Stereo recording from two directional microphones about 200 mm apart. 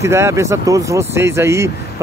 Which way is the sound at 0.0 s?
15° right (ahead or behind).